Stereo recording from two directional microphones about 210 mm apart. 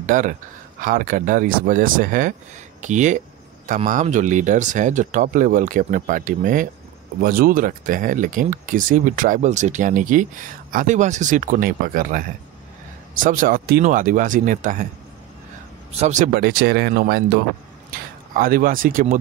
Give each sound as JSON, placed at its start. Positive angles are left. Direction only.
{"t": 0.0, "sound": "speech", "side_deg": -40}
{"t": 13.2, "sound": "speech", "side_deg": -40}
{"t": 15.9, "sound": "speech", "side_deg": -30}